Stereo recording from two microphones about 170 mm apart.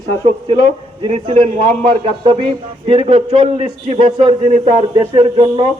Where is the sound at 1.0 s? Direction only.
30° right (ahead or behind).